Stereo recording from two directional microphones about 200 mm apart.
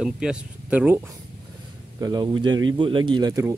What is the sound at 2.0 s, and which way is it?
Speech, 20° right (ahead or behind).